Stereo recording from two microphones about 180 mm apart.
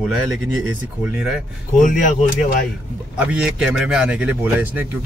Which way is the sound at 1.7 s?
45° left (ahead or behind).